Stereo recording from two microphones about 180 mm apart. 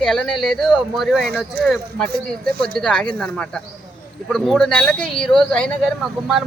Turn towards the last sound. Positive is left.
turn(degrees=5)  # may be behind; listen again after turning